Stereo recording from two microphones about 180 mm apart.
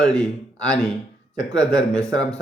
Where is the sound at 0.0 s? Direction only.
5° left (ahead or behind).